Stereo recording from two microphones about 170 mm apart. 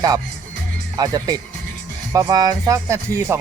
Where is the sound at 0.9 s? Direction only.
20° right (ahead or behind).